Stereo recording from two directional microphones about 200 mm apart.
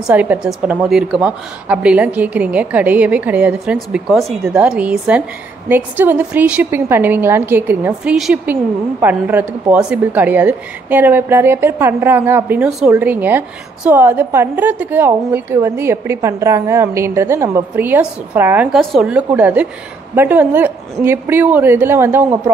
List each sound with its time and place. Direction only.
0.0 s a woman's voice: 10° right (ahead or behind)